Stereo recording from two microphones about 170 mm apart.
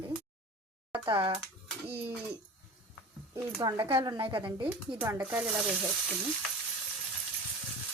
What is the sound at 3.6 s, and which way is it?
Speech, 25° right (ahead or behind).